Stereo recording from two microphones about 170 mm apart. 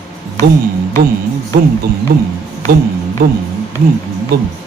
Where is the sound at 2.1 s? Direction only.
60° right (ahead or behind).